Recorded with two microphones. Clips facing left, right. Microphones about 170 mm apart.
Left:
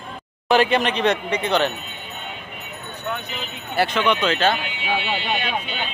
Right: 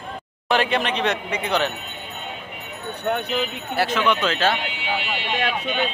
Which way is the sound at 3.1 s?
60° right (ahead or behind).